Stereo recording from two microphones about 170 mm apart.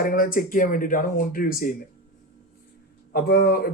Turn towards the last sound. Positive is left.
turn(degrees=60)  # may be behind; listen again after turning